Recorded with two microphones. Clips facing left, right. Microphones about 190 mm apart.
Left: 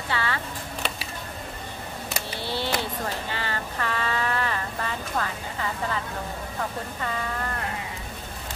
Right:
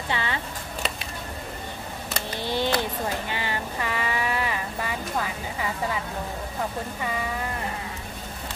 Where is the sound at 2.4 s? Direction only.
15° right (ahead or behind).